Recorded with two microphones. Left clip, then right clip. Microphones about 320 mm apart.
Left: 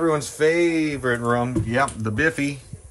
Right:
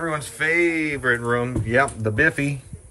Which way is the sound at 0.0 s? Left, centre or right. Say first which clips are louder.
Left 4 dB; centre.